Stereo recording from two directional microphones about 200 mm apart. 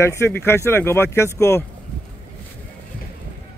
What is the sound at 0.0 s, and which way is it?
Speech, 15° left (ahead or behind).